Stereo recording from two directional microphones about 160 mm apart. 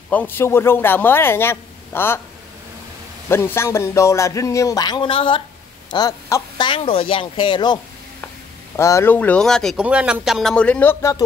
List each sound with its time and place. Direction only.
0.1 s speech: 10° left (ahead or behind)
3.3 s speech: 15° left (ahead or behind)
6.6 s speech: 35° left (ahead or behind)
8.7 s speech: 20° left (ahead or behind)